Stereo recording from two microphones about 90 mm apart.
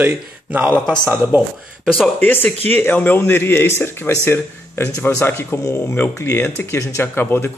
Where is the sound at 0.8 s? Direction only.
10° left (ahead or behind).